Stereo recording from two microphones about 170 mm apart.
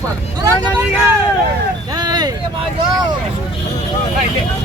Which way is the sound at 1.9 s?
25° right (ahead or behind).